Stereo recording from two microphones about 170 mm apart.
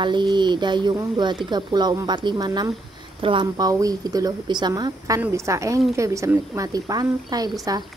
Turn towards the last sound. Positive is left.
turn(degrees=-20)  # may be behind; listen again after turning